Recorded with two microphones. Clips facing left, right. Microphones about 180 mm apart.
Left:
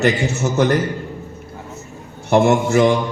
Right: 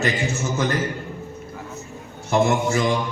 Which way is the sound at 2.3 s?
65° left (ahead or behind).